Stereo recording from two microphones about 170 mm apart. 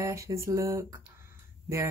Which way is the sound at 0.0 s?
20° right (ahead or behind).